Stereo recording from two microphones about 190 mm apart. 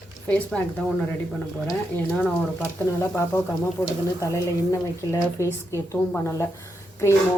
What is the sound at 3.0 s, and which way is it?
Speech, 15° left (ahead or behind).